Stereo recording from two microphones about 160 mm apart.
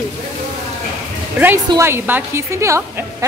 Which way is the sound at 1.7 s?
15° right (ahead or behind).